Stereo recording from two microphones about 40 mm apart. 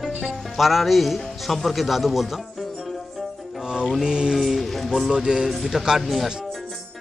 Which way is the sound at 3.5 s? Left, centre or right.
Centre.